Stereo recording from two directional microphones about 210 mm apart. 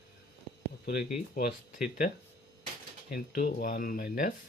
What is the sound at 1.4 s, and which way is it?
Speech, 45° left (ahead or behind).